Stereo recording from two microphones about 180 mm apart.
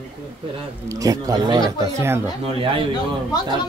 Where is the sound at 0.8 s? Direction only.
20° right (ahead or behind).